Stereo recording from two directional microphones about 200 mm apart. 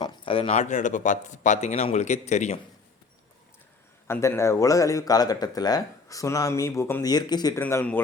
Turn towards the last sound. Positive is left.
turn(degrees=10)  # may be behind; listen again after turning